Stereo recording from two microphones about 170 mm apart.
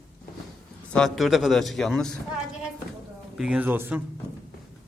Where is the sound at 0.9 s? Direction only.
Centre (ahead or behind).